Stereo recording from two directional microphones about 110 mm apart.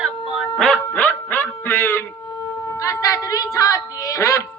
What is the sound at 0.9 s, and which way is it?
Music, 15° left (ahead or behind).